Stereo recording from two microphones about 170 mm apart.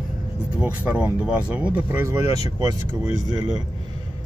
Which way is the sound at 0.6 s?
10° right (ahead or behind).